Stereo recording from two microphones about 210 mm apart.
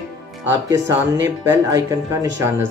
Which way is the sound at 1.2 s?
15° right (ahead or behind).